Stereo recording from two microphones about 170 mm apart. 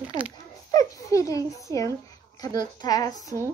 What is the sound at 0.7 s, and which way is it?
A child's voice, 20° left (ahead or behind).